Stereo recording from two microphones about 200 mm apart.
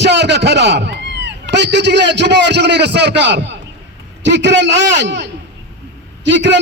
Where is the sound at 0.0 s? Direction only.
60° right (ahead or behind).